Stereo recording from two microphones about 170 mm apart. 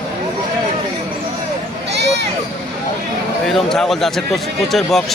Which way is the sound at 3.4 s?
Centre (ahead or behind).